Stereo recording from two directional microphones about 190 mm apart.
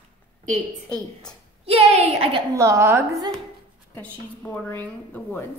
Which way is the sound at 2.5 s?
15° right (ahead or behind).